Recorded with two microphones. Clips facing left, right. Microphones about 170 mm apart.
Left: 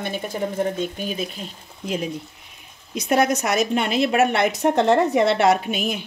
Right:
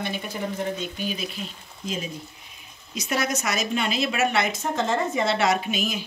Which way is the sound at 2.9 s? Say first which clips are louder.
Left 7 dB; 55° left (ahead or behind).